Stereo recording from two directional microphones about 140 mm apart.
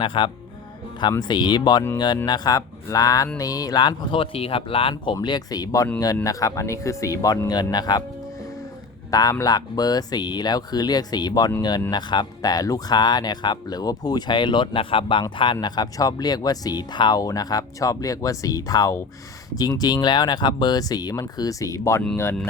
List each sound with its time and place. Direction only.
0.0 s speech: 35° left (ahead or behind)
5.1 s speech: 30° left (ahead or behind)
9.0 s speech: 25° left (ahead or behind)